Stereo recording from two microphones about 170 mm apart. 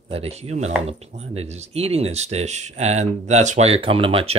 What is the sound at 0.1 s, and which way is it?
Speech, 35° right (ahead or behind).